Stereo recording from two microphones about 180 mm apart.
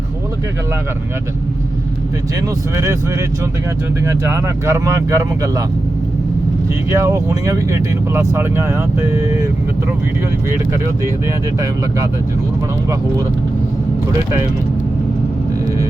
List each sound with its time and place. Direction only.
2.7 s speech: 15° right (ahead or behind)
6.9 s speech: 15° right (ahead or behind)